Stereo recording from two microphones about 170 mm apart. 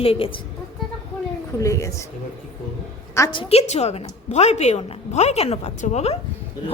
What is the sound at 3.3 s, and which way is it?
A woman's voice, 30° left (ahead or behind).